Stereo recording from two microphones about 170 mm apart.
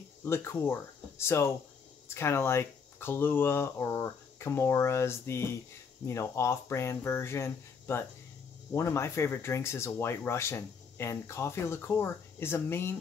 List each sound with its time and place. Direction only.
0.2 s speech: 15° left (ahead or behind)